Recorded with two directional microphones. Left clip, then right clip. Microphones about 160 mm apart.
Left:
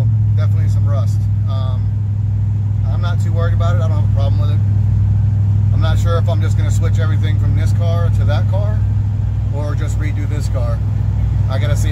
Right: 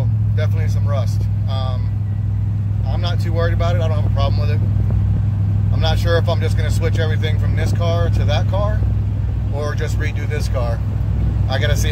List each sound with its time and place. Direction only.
3.1 s speech: 5° left (ahead or behind)
5.8 s speech: 10° left (ahead or behind)
7.8 s speech: 5° left (ahead or behind)